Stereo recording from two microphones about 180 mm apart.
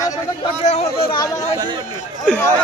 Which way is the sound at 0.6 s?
35° left (ahead or behind).